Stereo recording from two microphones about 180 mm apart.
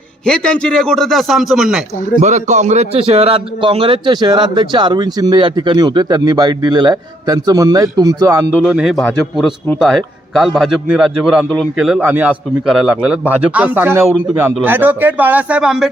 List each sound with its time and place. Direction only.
0.3 s a man's voice: 5° left (ahead or behind)
2.2 s a man's voice: 40° right (ahead or behind); by 8.4 s 20° right (ahead or behind)
8.6 s a man's voice: 5° right (ahead or behind)